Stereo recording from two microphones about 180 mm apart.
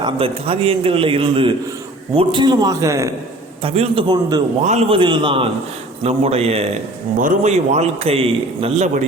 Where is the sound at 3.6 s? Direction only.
30° right (ahead or behind).